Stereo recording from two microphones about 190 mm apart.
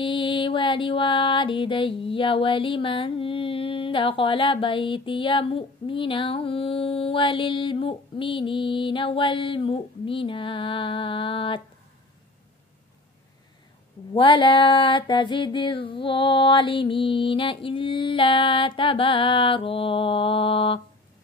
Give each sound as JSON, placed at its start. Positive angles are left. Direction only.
{"t": 0.0, "sound": "mantra", "side_deg": 25}
{"t": 14.1, "sound": "mantra", "side_deg": 25}